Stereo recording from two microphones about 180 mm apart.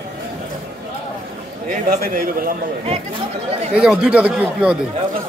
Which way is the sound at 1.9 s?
55° right (ahead or behind).